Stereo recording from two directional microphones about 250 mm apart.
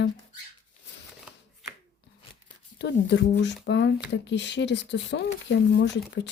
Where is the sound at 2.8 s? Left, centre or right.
Left.